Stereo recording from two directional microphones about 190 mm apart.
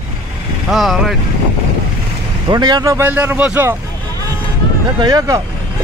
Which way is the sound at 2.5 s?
20° right (ahead or behind).